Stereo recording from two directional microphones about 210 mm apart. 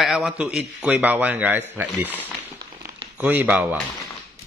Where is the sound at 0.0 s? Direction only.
Centre (ahead or behind).